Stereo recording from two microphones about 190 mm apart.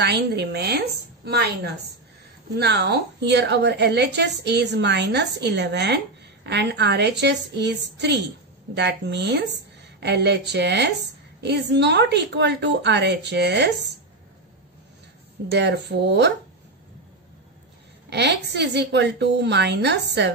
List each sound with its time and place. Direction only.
0.0 s a woman's voice: 60° right (ahead or behind)
15.5 s a woman's voice: 65° right (ahead or behind)
18.1 s a woman's voice: 65° right (ahead or behind)